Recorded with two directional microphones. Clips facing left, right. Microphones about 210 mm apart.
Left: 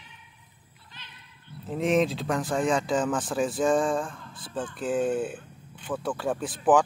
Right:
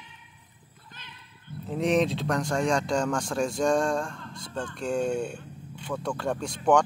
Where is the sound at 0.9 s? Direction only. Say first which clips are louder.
Even; 50° right (ahead or behind).